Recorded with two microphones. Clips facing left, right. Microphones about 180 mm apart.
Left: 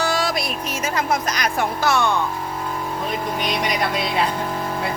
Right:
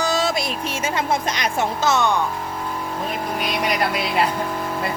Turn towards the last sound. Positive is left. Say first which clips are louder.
# even
turn(degrees=-5)  # may be behind; listen again after turning